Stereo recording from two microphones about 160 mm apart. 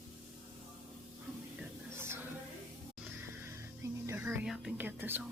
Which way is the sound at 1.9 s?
15° right (ahead or behind).